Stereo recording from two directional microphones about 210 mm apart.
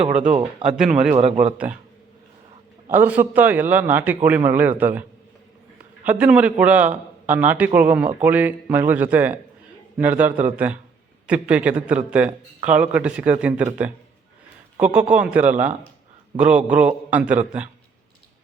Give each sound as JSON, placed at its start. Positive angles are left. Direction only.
{"t": 0.3, "sound": "speech", "side_deg": -35}
{"t": 2.9, "sound": "a man's voice", "side_deg": -10}
{"t": 6.1, "sound": "a man's voice", "side_deg": -5}